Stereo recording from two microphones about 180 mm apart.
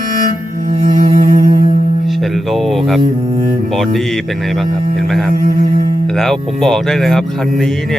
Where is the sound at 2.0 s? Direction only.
Centre (ahead or behind).